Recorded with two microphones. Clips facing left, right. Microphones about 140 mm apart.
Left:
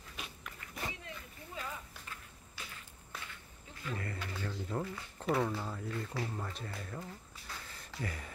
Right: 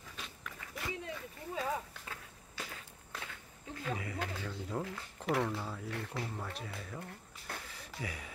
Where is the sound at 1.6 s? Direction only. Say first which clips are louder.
Right 8 dB; 90° right.